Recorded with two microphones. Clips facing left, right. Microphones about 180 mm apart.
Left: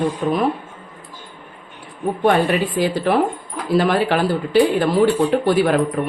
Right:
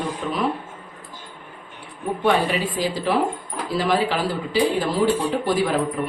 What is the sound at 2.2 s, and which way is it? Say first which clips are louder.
Speech: left 4 dB; 55° left (ahead or behind).